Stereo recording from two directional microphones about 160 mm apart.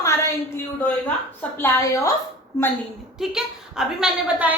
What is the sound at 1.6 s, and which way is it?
Speech, 20° left (ahead or behind).